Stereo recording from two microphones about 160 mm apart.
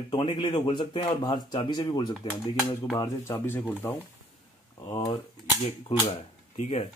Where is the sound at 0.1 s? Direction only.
30° left (ahead or behind).